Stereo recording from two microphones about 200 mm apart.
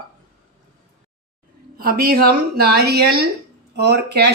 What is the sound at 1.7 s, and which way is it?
A woman's voice, 50° right (ahead or behind).